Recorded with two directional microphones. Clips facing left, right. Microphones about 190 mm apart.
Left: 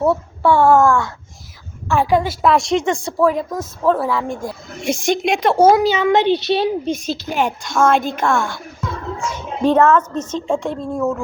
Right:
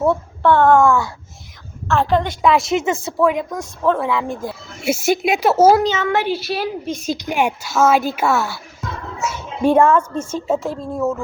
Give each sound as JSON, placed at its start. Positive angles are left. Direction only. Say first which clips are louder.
{"t": 0.0, "sound": "a woman's voice", "louder": "even", "side_deg": 5}
{"t": 1.9, "sound": "a woman's voice", "louder": "left 1 dB", "side_deg": 10}
{"t": 5.8, "sound": "a woman's voice", "louder": "left 4 dB", "side_deg": 15}
{"t": 7.0, "sound": "a woman's voice", "louder": "right 1 dB", "side_deg": -15}